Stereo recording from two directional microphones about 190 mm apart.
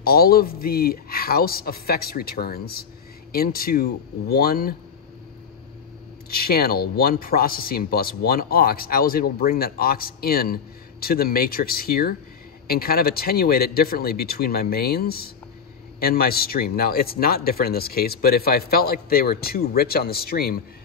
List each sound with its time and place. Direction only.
0.0 s speech: 55° left (ahead or behind)
6.3 s speech: 55° left (ahead or behind)